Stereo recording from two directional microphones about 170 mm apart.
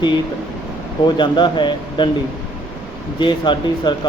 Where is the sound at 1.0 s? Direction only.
25° left (ahead or behind).